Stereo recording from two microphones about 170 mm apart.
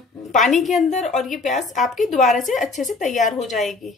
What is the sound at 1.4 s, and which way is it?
Speech, 45° left (ahead or behind).